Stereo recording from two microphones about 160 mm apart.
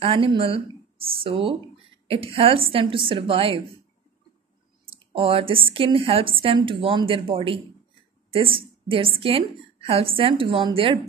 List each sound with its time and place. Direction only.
0.0 s a woman's voice: 35° right (ahead or behind)
4.8 s a woman's voice: 35° right (ahead or behind)